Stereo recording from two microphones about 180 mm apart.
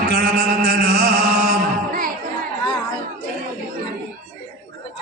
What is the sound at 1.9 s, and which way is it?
Music, 50° right (ahead or behind).